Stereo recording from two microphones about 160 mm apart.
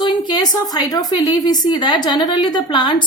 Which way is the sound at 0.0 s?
25° left (ahead or behind).